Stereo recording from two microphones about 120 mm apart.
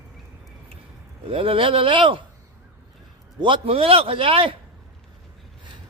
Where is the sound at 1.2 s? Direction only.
50° right (ahead or behind).